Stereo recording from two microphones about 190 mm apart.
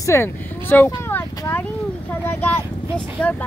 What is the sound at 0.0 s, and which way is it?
Speech, 15° left (ahead or behind).